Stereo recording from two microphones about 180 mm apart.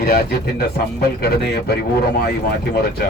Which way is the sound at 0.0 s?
60° left (ahead or behind).